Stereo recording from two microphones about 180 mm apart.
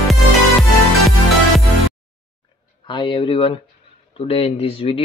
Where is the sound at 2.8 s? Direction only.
25° left (ahead or behind).